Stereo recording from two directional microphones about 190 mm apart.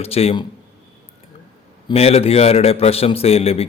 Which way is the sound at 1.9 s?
30° left (ahead or behind).